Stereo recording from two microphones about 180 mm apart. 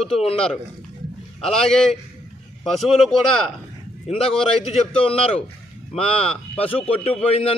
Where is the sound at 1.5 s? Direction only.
5° left (ahead or behind).